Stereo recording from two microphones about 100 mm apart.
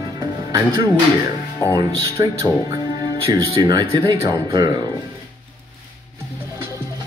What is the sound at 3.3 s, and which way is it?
Speech, 40° right (ahead or behind).